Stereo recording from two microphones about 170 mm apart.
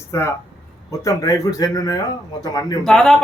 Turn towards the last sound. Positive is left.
turn(degrees=0)  # may be behind; listen again after turning